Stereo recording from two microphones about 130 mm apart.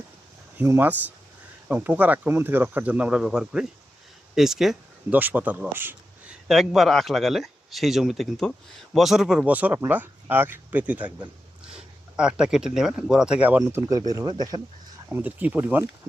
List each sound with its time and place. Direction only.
0.5 s speech: 15° right (ahead or behind)
6.5 s speech: centre (ahead or behind)
13.6 s speech: 25° right (ahead or behind)
15.1 s speech: 15° right (ahead or behind)